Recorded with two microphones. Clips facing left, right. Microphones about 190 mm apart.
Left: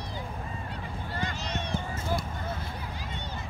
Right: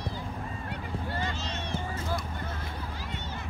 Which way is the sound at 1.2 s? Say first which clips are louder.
Left 1 dB; 15° left (ahead or behind).